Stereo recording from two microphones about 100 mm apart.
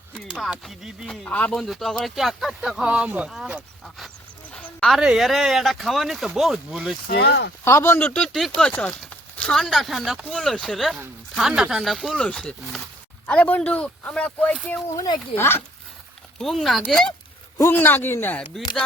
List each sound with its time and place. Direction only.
0.3 s speech: 5° right (ahead or behind)
1.3 s speech: 15° left (ahead or behind)
1.5 s speech: centre (ahead or behind)
4.5 s a sound: 5° left (ahead or behind)
4.9 s speech: 5° right (ahead or behind)
7.6 s speech: 25° left (ahead or behind)
7.9 s speech: 10° left (ahead or behind)
14.9 s speech: 40° left (ahead or behind)
15.4 s speech: 25° left (ahead or behind)
16.4 s speech: centre (ahead or behind)
17.6 s speech: 20° left (ahead or behind)